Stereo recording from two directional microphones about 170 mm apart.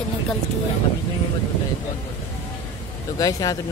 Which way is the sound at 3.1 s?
20° left (ahead or behind).